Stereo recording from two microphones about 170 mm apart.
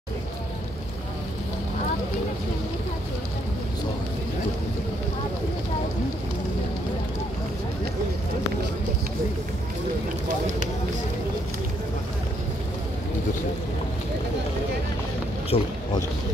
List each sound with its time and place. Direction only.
15.5 s speech: 35° left (ahead or behind)